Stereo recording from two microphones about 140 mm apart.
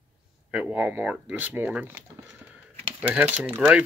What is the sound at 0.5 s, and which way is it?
Speech, 10° right (ahead or behind).